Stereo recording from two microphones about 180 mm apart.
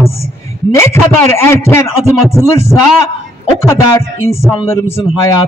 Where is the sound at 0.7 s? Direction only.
15° left (ahead or behind).